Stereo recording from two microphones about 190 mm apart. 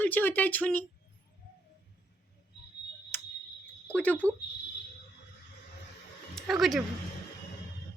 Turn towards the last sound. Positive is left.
turn(degrees=0)  # may be behind; listen again after turning